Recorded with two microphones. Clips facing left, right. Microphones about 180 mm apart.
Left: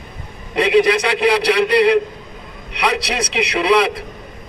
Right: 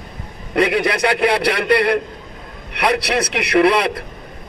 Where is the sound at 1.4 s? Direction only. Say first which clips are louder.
Left 3 dB; 55° right (ahead or behind).